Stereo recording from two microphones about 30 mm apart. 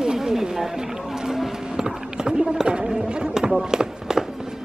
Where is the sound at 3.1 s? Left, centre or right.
Right.